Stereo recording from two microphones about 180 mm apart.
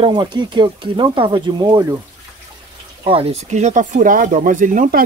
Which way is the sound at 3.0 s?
30° right (ahead or behind).